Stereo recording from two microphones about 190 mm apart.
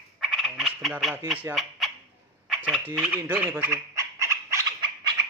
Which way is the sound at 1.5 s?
15° right (ahead or behind).